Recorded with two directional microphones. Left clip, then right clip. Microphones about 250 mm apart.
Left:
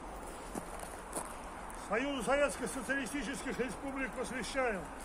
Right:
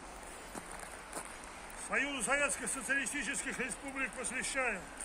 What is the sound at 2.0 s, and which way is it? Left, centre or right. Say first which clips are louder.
A man's voice: left 5 dB; centre.